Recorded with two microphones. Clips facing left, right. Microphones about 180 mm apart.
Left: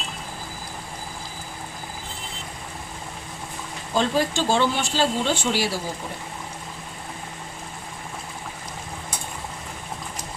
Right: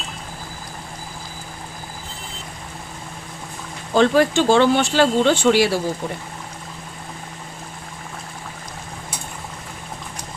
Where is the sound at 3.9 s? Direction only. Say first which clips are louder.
Right 7 dB; 70° right (ahead or behind).